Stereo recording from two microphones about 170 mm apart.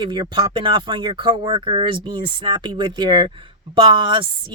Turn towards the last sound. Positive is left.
turn(degrees=-25)  # may be behind; listen again after turning